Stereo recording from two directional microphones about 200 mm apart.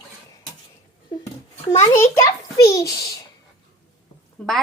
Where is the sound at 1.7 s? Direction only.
15° left (ahead or behind).